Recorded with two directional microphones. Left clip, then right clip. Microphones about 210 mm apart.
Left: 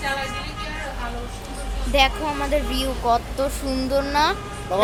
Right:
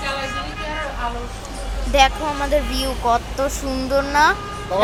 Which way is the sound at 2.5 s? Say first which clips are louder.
Right 3 dB; centre (ahead or behind).